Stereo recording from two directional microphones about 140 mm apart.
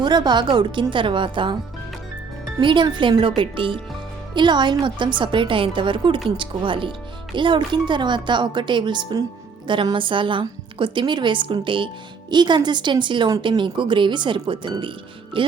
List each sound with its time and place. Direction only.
0.0 s a woman's voice: 30° right (ahead or behind)
2.6 s a woman's voice: 35° right (ahead or behind)